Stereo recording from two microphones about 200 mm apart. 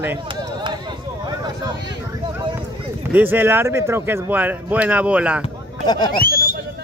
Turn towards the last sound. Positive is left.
turn(degrees=45)  # may be behind; listen again after turning